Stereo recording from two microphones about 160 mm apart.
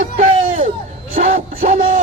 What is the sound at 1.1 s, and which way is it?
Music, 50° right (ahead or behind).